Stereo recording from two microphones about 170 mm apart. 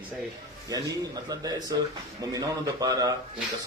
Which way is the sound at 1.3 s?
20° right (ahead or behind).